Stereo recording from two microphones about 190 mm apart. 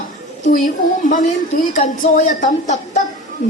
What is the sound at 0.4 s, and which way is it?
Speech, 45° left (ahead or behind).